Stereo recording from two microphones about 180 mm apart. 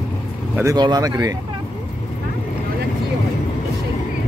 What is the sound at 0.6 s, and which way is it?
Speech, 20° right (ahead or behind).